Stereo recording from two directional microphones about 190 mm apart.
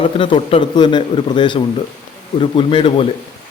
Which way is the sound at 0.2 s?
30° left (ahead or behind).